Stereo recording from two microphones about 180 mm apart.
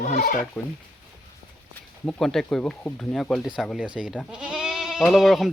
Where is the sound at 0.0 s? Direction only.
45° left (ahead or behind).